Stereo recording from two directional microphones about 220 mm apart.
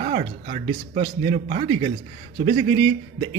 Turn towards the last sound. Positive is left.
turn(degrees=-20)  # may be behind; listen again after turning